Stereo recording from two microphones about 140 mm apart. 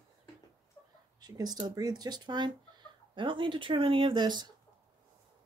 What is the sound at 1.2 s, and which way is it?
Speech, 30° right (ahead or behind).